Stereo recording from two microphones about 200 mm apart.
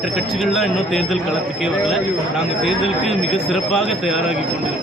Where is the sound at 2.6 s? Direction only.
Centre (ahead or behind).